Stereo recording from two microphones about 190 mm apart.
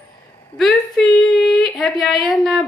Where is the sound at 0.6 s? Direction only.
Centre (ahead or behind).